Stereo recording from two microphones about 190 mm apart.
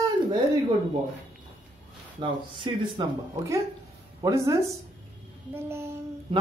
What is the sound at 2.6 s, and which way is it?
Speech, 25° right (ahead or behind).